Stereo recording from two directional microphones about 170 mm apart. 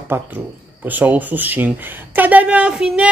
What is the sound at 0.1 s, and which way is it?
Speech, 15° right (ahead or behind).